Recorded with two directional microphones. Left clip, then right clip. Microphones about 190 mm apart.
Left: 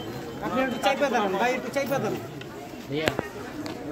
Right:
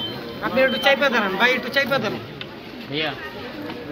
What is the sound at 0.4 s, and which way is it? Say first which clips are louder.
A man's voice: right 7 dB; 45° left (ahead or behind).